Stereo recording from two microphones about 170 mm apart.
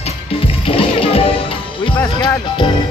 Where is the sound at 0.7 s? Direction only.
35° left (ahead or behind).